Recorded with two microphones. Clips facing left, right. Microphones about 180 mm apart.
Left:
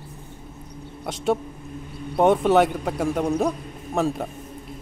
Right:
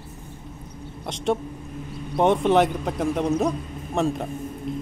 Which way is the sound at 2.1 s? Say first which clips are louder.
Left 1 dB; centre (ahead or behind).